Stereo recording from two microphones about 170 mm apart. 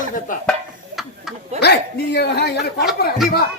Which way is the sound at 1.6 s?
75° left (ahead or behind).